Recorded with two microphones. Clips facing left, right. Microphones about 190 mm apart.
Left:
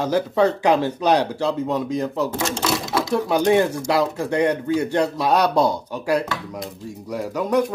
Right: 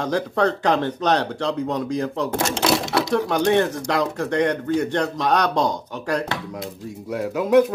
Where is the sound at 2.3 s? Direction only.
70° right (ahead or behind).